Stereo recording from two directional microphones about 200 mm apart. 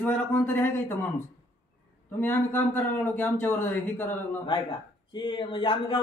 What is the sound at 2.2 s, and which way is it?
A man's voice, 10° left (ahead or behind).